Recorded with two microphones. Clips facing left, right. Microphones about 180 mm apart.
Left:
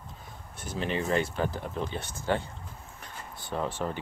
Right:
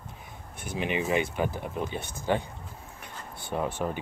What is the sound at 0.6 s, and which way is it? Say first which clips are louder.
Speech: right 1 dB; 15° right (ahead or behind).